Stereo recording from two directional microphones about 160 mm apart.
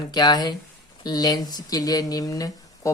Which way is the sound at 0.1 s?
25° left (ahead or behind).